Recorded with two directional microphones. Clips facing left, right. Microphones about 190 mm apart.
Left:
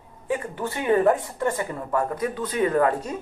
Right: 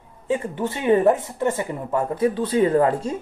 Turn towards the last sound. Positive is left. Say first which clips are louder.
# right 3 dB
turn(degrees=-25)  # may be behind; listen again after turning